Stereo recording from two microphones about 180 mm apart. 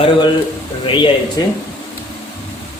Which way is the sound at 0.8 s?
25° left (ahead or behind).